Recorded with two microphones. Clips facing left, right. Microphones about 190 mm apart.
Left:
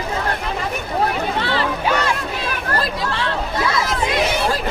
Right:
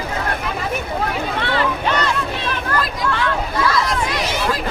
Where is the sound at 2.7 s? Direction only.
30° left (ahead or behind).